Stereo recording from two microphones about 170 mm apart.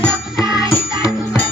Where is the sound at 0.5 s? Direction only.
20° left (ahead or behind).